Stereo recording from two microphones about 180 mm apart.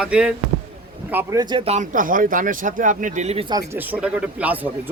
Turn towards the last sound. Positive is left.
turn(degrees=-10)  # may be behind; listen again after turning